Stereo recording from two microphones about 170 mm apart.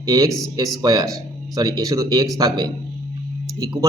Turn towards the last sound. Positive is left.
turn(degrees=-20)  # may be behind; listen again after turning